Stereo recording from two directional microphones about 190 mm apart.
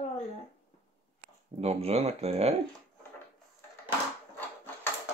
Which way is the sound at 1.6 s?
35° right (ahead or behind).